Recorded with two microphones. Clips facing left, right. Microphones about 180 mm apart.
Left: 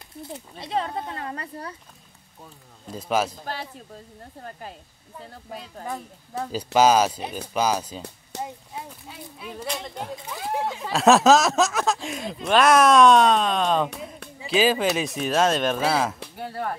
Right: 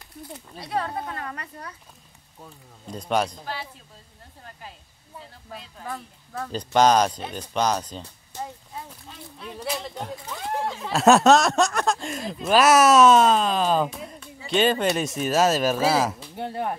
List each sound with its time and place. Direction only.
0.2 s speech: 25° left (ahead or behind)
2.9 s speech: 5° left (ahead or behind)
4.4 s speech: 45° left (ahead or behind)
5.9 s speech: 20° left (ahead or behind)
6.5 s speech: 5° left (ahead or behind)
13.9 s music: centre (ahead or behind)
14.4 s speech: centre (ahead or behind)
16.3 s speech: 25° right (ahead or behind)